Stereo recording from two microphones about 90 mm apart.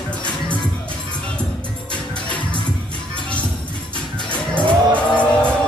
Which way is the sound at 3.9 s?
60° left (ahead or behind).